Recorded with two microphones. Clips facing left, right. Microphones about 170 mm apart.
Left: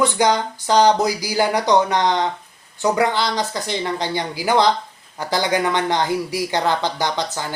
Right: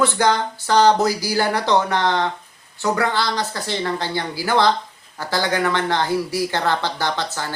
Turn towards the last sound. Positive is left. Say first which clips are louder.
# left 1 dB
turn(degrees=15)  # may be behind; listen again after turning